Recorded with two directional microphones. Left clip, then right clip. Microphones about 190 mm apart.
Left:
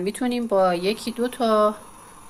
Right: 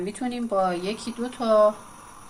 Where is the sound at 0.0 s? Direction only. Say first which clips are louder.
Left 5 dB; 45° left (ahead or behind).